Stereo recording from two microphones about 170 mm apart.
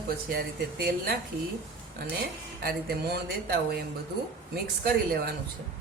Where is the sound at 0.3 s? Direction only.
60° right (ahead or behind).